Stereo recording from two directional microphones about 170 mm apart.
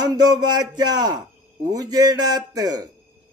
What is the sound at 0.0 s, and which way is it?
Speech, 25° right (ahead or behind).